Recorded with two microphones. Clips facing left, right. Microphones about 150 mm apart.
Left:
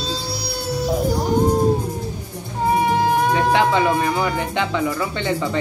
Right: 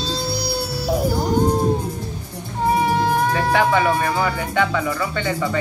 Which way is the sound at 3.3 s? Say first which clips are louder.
Left 1 dB; 20° left (ahead or behind).